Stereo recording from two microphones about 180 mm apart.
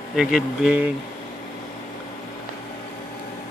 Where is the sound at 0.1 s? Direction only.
Centre (ahead or behind).